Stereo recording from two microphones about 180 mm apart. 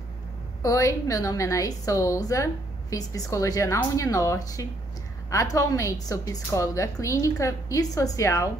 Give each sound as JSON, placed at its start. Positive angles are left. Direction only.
{"t": 0.6, "sound": "a woman's voice", "side_deg": 20}